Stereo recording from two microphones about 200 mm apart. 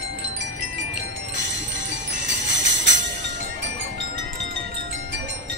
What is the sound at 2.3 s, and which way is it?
Jingle bell, 65° right (ahead or behind).